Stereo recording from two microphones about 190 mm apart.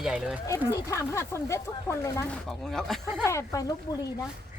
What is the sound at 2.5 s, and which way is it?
Speech, centre (ahead or behind).